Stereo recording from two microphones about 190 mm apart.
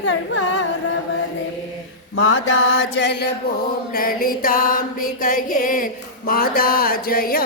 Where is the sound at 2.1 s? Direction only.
90° left; by 3.2 s 65° left (ahead or behind).